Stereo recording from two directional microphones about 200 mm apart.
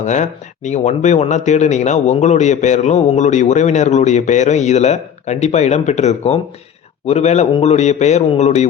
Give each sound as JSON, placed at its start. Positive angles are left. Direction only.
{"t": 0.0, "sound": "speech", "side_deg": 35}